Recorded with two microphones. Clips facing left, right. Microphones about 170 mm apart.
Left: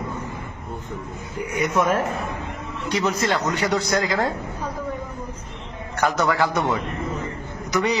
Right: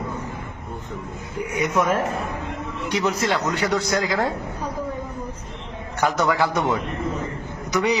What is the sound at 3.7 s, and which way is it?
Speech, centre (ahead or behind).